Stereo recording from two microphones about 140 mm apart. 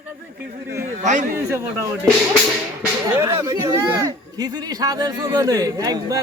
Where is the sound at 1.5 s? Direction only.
20° right (ahead or behind).